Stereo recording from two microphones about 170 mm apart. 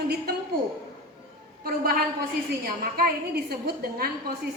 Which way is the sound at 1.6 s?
60° right (ahead or behind).